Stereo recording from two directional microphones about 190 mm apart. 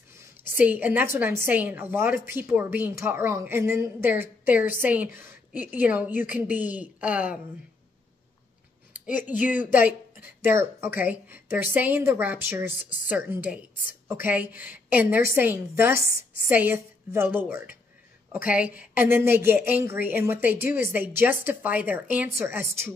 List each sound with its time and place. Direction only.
0.6 s a woman's voice: 10° right (ahead or behind)
9.0 s a woman's voice: 10° right (ahead or behind)
16.0 s a woman's voice: 50° left (ahead or behind)
16.4 s a woman's voice: 10° right (ahead or behind)